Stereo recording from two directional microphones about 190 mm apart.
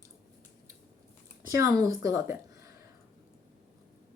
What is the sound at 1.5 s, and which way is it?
A woman's voice, 15° right (ahead or behind).